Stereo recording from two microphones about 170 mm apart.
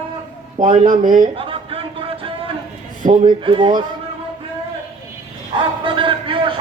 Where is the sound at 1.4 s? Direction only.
30° right (ahead or behind).